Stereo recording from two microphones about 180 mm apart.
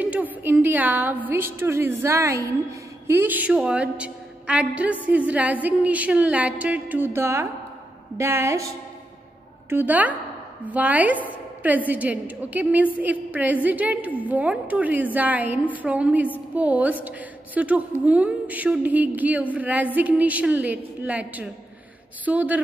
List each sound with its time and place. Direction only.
0.0 s a woman's voice: 10° right (ahead or behind)